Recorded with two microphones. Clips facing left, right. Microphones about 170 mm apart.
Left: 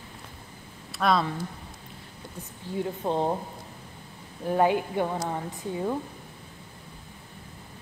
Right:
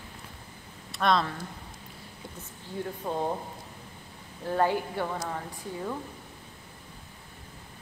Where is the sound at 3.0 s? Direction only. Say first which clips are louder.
Left 4 dB; 25° left (ahead or behind).